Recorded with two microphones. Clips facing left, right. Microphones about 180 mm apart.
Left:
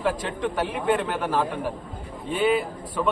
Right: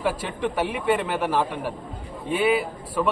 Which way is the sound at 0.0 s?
10° right (ahead or behind).